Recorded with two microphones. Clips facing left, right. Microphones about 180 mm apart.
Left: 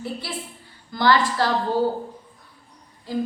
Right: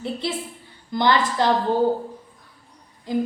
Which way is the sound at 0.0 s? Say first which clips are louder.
Right 4 dB; 20° right (ahead or behind).